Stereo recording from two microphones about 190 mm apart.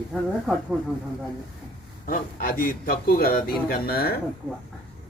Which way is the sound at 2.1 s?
50° left (ahead or behind).